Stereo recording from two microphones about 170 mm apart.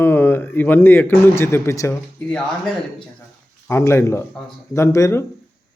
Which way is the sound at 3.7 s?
15° left (ahead or behind).